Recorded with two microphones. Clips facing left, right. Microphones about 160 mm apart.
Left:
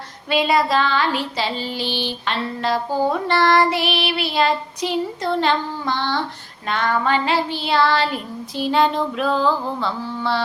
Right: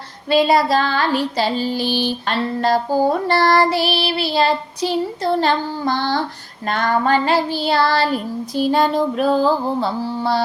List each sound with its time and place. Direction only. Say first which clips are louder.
0.3 s child singing: right 4 dB; 35° right (ahead or behind)